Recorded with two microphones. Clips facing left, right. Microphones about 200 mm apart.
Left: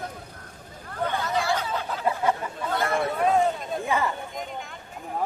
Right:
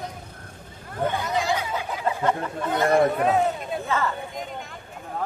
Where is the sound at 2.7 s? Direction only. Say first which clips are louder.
Right 7 dB; 15° right (ahead or behind).